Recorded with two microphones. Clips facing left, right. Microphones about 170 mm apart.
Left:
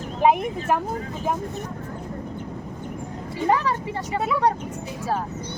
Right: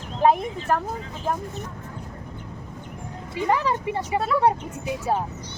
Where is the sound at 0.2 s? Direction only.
10° left (ahead or behind).